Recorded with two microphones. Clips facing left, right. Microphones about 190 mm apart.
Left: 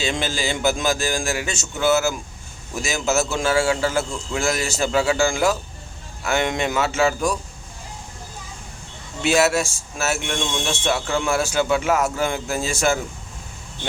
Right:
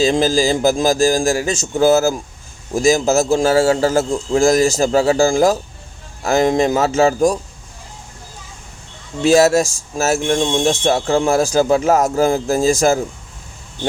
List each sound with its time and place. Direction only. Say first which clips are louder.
0.0 s speech: right 10 dB; 35° right (ahead or behind)
9.2 s speech: right 7 dB; 35° right (ahead or behind)